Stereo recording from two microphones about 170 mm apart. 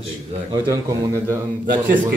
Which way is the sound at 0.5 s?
20° right (ahead or behind).